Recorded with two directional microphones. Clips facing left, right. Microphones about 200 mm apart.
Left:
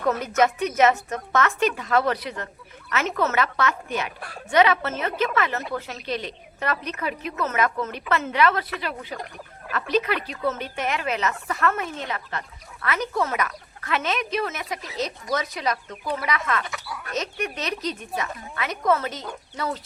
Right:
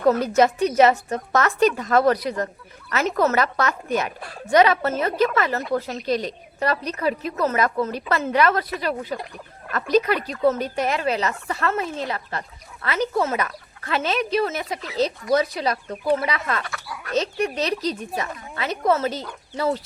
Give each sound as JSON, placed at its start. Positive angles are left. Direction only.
{"t": 0.0, "sound": "speech", "side_deg": -35}